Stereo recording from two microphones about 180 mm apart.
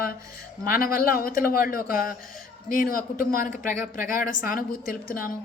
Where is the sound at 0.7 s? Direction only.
55° left (ahead or behind).